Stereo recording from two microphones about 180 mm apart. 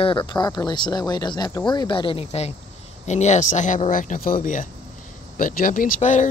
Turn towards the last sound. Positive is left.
turn(degrees=45)  # may be behind; listen again after turning